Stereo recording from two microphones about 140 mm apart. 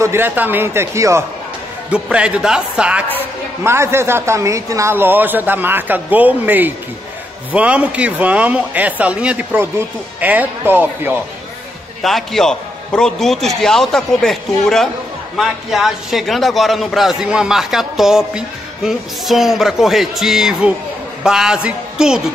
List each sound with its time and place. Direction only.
0.0 s speech: 15° right (ahead or behind)
1.9 s speech: 10° right (ahead or behind)
12.0 s a man's voice: centre (ahead or behind)